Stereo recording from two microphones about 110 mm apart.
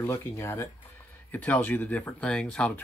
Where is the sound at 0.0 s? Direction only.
25° left (ahead or behind).